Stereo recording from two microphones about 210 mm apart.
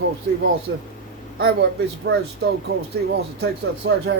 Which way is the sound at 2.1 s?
50° right (ahead or behind).